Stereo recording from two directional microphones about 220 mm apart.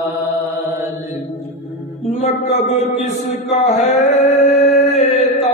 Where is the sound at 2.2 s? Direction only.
30° left (ahead or behind).